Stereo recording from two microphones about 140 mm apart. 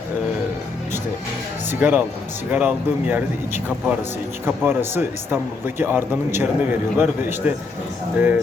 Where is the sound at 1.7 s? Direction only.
15° right (ahead or behind).